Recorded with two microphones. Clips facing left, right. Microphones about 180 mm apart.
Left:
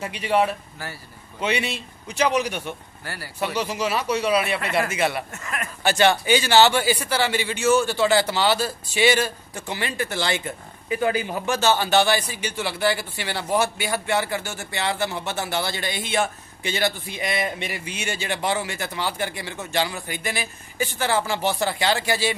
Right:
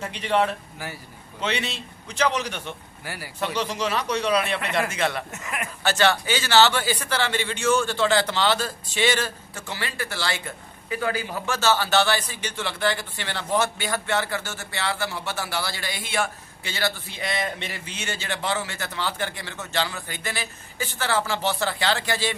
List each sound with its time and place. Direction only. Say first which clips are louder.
0.0 s speech: left 2 dB; 10° left (ahead or behind)
5.3 s a man's voice: even; 15° right (ahead or behind)
5.9 s speech: left 3 dB; 15° left (ahead or behind)